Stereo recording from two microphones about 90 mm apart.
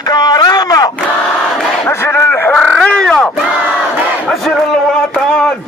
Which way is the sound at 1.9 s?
25° left (ahead or behind).